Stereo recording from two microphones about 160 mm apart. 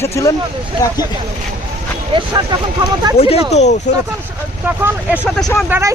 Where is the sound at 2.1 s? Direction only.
30° right (ahead or behind).